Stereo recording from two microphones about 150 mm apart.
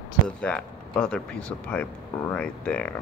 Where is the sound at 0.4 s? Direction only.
5° left (ahead or behind).